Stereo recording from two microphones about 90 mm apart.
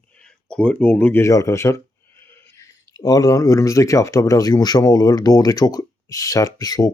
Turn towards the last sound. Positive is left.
turn(degrees=40)  # may be behind; listen again after turning